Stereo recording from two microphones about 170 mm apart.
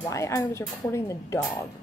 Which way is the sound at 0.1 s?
20° left (ahead or behind).